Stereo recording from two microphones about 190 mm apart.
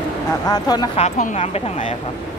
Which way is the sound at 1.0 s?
35° left (ahead or behind).